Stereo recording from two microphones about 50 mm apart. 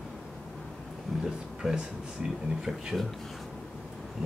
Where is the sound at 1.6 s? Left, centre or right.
Centre.